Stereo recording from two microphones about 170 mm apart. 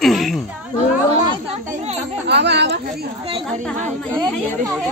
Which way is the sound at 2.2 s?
90° right.